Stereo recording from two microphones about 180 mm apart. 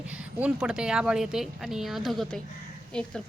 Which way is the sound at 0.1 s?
5° right (ahead or behind).